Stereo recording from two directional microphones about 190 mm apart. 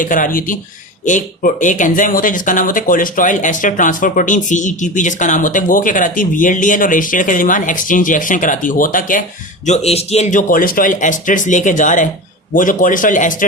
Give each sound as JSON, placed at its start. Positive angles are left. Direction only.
{"t": 0.0, "sound": "speech", "side_deg": 45}
{"t": 9.6, "sound": "speech", "side_deg": 35}